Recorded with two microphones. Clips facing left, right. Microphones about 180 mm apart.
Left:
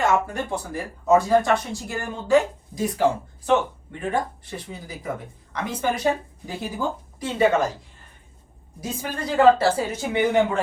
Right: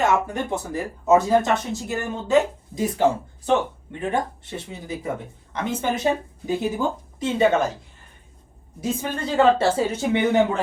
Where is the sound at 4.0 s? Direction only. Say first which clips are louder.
Right 1 dB; 25° right (ahead or behind).